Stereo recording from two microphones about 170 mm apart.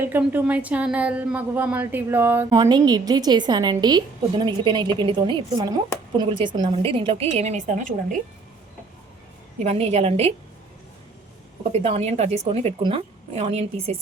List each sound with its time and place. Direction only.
0.0 s a woman's voice: 10° right (ahead or behind)
2.6 s a woman's voice: 25° right (ahead or behind); by 7.9 s 45° right (ahead or behind)
9.6 s a woman's voice: 40° right (ahead or behind)
11.7 s a woman's voice: 35° right (ahead or behind)